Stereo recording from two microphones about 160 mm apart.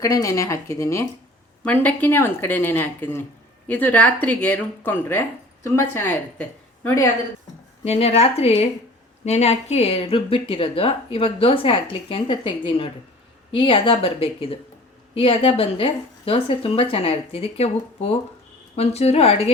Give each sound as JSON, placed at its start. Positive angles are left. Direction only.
{"t": 0.0, "sound": "speech", "side_deg": 20}
{"t": 7.9, "sound": "speech", "side_deg": 40}